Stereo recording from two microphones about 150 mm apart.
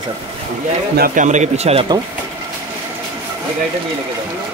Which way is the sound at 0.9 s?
70° right (ahead or behind).